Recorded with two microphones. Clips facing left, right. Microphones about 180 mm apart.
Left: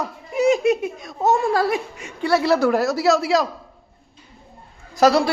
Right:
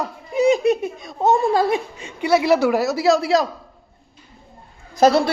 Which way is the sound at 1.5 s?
25° right (ahead or behind).